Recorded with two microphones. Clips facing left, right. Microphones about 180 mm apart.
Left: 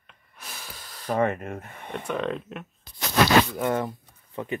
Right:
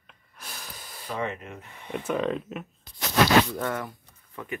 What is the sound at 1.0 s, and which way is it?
Speech, 50° left (ahead or behind).